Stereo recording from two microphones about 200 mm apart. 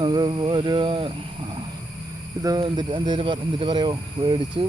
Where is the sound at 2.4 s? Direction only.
20° right (ahead or behind).